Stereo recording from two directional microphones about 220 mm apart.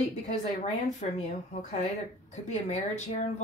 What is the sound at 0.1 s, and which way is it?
Speech, 30° left (ahead or behind).